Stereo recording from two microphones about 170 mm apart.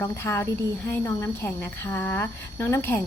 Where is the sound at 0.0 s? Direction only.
15° left (ahead or behind).